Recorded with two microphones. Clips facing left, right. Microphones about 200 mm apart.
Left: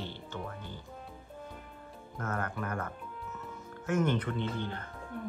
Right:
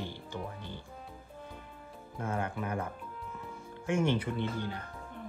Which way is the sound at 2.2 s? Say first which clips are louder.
Right 1 dB; 10° right (ahead or behind).